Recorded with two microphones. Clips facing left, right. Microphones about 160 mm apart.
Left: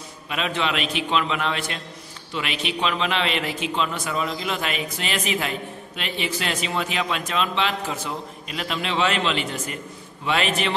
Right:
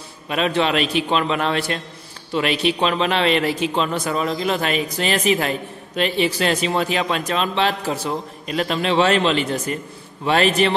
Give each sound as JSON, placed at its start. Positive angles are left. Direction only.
{"t": 0.3, "sound": "a man's voice", "side_deg": -40}